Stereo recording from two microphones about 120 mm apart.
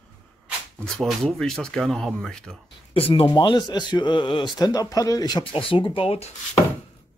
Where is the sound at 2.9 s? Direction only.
55° left (ahead or behind).